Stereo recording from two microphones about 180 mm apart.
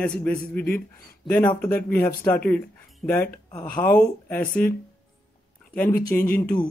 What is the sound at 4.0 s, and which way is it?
Speech, 10° left (ahead or behind).